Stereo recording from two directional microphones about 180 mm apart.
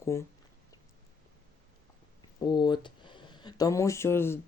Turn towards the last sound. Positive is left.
turn(degrees=15)  # may be behind; listen again after turning